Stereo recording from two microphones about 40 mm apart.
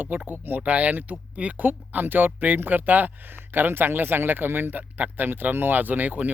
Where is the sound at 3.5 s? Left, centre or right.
Right.